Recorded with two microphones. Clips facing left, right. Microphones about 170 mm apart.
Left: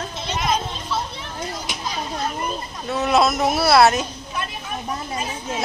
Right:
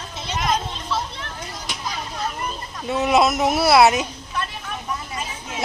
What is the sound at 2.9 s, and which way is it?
A woman's voice, 10° right (ahead or behind).